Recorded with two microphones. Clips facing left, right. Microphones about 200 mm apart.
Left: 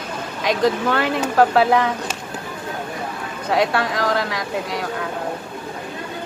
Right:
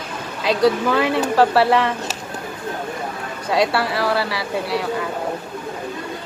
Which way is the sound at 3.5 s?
10° right (ahead or behind).